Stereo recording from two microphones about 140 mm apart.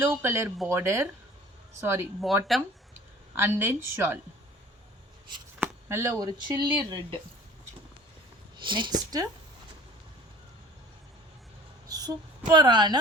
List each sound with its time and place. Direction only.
0.0 s a woman's voice: 15° right (ahead or behind)
2.5 s speech: centre (ahead or behind)
3.3 s a woman's voice: 15° right (ahead or behind)
5.5 s speech: 20° right (ahead or behind)
8.6 s speech: 35° right (ahead or behind)
11.9 s female singing: 25° right (ahead or behind)
12.5 s speech: 30° right (ahead or behind)